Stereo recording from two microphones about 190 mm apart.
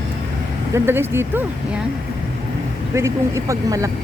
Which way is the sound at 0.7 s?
10° right (ahead or behind).